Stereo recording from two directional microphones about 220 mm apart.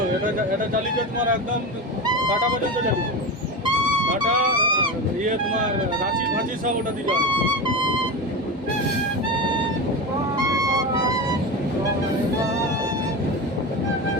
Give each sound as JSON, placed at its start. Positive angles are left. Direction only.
{"t": 4.3, "sound": "speech", "side_deg": -40}
{"t": 4.5, "sound": "music", "side_deg": -20}
{"t": 10.3, "sound": "music", "side_deg": -15}